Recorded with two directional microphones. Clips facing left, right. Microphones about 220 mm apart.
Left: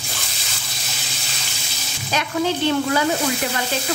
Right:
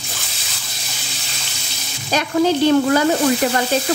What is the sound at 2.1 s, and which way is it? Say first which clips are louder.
Speech: right 5 dB; 40° right (ahead or behind).